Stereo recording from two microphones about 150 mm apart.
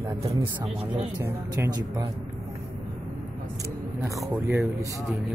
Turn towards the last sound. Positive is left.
turn(degrees=-20)  # may be behind; listen again after turning